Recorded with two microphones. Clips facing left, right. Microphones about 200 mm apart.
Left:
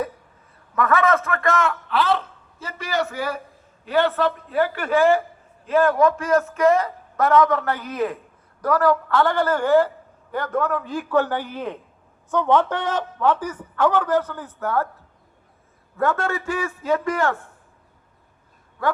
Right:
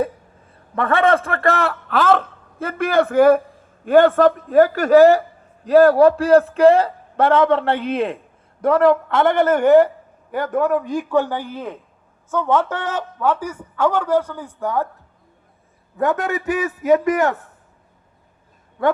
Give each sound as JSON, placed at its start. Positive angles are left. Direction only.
{"t": 0.8, "sound": "a man's voice", "side_deg": -30}
{"t": 16.0, "sound": "a man's voice", "side_deg": -20}
{"t": 18.8, "sound": "a man's voice", "side_deg": -25}